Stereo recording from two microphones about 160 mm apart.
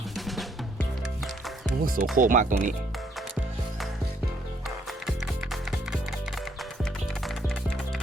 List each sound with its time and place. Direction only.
1.2 s music: centre (ahead or behind)
1.8 s speech: 60° right (ahead or behind)
4.9 s music: centre (ahead or behind)